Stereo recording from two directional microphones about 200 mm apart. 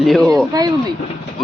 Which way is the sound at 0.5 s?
20° right (ahead or behind).